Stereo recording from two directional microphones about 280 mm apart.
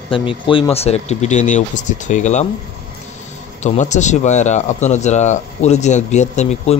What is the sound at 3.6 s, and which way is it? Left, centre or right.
Speech, left.